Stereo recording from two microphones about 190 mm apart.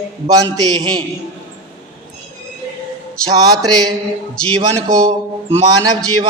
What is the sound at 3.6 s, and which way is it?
Speech, 20° right (ahead or behind).